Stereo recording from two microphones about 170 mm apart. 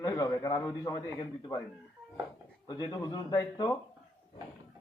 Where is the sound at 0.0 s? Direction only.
20° left (ahead or behind).